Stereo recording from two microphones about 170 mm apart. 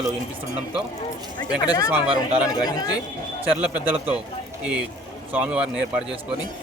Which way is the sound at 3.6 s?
5° right (ahead or behind).